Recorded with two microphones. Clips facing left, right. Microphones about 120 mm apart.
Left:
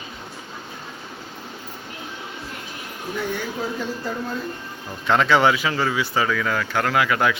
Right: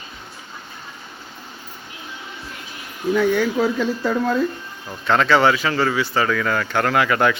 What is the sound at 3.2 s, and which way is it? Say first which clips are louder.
Speech: right 9 dB; 90° right.